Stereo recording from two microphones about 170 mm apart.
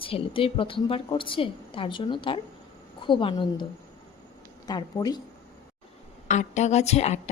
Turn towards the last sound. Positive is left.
turn(degrees=40)  # may be behind; listen again after turning